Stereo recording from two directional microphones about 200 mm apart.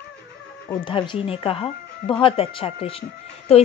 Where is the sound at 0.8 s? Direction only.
25° left (ahead or behind).